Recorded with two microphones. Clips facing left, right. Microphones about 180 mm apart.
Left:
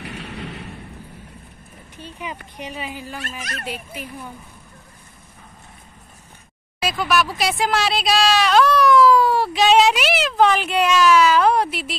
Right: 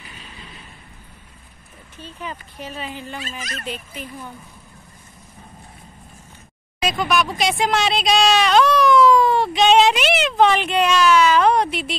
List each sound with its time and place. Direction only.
0.0 s a sound: 70° left (ahead or behind)
2.0 s speech: 15° left (ahead or behind)
3.2 s speech: 65° left (ahead or behind)
3.6 s speech: 10° left (ahead or behind)
6.8 s speech: 5° left (ahead or behind)